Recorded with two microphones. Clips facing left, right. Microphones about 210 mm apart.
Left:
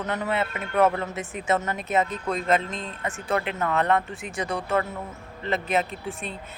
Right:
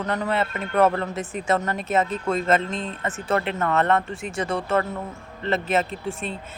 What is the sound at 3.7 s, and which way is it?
Speech, 15° left (ahead or behind).